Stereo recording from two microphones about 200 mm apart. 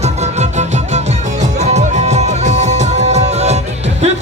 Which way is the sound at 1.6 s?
35° right (ahead or behind).